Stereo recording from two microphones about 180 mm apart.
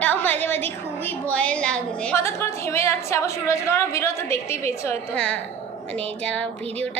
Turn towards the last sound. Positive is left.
turn(degrees=5)  # may be behind; listen again after turning